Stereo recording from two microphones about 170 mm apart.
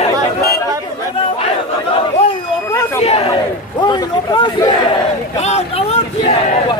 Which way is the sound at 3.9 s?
25° left (ahead or behind).